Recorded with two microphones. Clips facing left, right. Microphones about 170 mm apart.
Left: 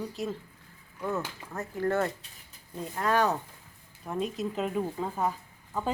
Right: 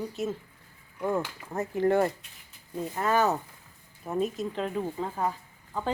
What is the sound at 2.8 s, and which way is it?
Speech, 5° right (ahead or behind).